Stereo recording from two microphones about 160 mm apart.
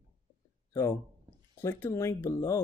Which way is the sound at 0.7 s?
15° left (ahead or behind).